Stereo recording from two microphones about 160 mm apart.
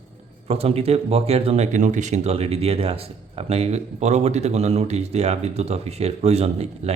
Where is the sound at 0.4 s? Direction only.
40° right (ahead or behind).